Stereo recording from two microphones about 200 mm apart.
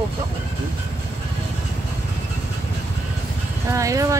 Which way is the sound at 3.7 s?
15° right (ahead or behind).